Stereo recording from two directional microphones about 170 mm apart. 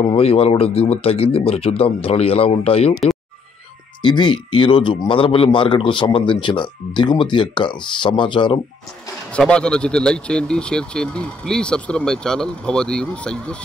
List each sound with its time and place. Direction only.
0.0 s speech: 35° left (ahead or behind)
2.9 s speech: centre (ahead or behind)
4.0 s speech: 25° left (ahead or behind)
9.3 s speech: 5° left (ahead or behind)